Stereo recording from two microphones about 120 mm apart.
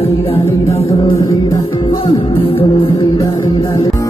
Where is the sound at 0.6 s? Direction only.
55° left (ahead or behind).